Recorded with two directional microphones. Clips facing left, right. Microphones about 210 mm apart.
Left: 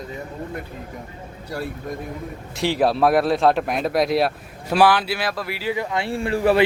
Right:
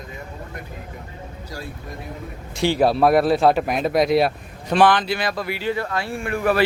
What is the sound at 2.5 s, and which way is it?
Speech, centre (ahead or behind).